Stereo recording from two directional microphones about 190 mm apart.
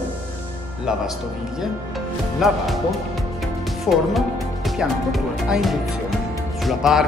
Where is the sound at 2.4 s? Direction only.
Centre (ahead or behind).